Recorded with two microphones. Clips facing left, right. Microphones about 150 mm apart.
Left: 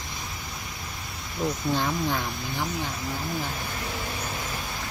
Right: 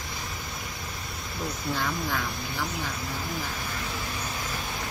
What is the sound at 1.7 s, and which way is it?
Speech, 25° left (ahead or behind).